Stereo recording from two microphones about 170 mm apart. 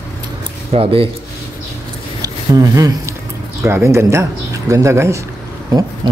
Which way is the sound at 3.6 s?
15° right (ahead or behind).